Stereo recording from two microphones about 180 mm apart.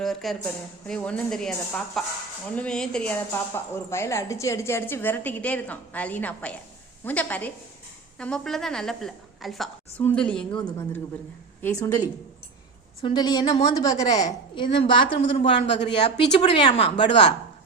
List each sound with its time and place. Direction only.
0.0 s a woman's voice: centre (ahead or behind)
11.6 s a woman's voice: 20° left (ahead or behind)